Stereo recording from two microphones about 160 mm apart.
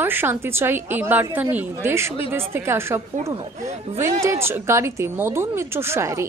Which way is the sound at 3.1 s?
40° right (ahead or behind).